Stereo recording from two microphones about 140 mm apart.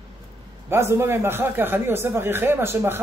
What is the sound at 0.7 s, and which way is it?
Speech, 20° right (ahead or behind).